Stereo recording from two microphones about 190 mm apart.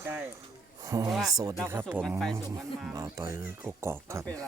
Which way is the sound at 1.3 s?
20° right (ahead or behind).